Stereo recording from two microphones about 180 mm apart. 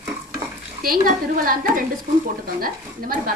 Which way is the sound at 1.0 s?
50° right (ahead or behind).